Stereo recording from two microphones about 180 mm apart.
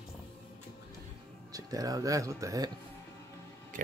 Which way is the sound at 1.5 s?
20° right (ahead or behind).